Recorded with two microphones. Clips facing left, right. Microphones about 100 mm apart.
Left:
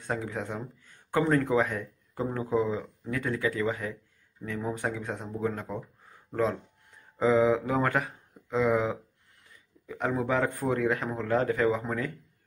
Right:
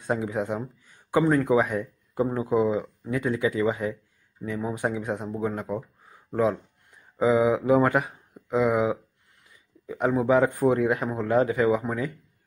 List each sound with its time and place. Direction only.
0.0 s speech: 15° right (ahead or behind)